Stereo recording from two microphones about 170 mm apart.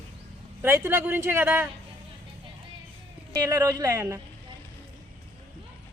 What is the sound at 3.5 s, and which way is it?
Speech, 20° right (ahead or behind).